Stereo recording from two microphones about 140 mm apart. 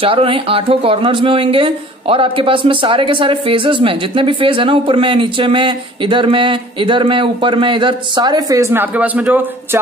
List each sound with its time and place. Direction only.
0.0 s speech: 40° right (ahead or behind); by 9.8 s 10° right (ahead or behind)